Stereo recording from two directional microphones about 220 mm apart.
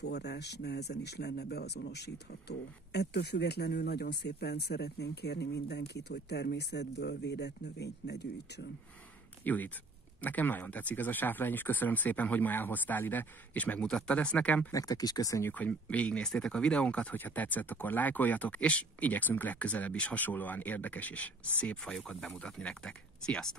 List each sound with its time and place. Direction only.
0.1 s speech: 50° left (ahead or behind)
9.4 s speech: 10° left (ahead or behind)